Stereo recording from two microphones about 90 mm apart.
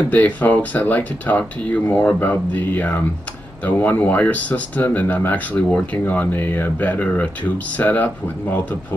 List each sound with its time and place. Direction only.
0.1 s speech: 15° left (ahead or behind)